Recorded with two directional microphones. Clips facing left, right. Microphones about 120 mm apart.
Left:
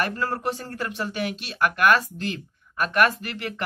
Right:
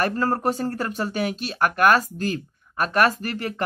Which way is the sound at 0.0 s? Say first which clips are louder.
Right 4 dB; 40° right (ahead or behind).